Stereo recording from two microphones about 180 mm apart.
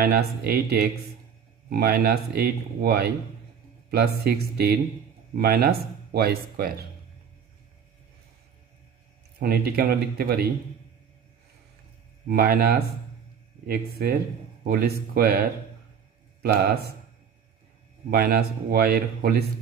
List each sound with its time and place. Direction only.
0.0 s speech: 60° right (ahead or behind)
9.4 s speech: 60° right (ahead or behind)
12.3 s speech: 60° right (ahead or behind)
18.1 s speech: 60° right (ahead or behind)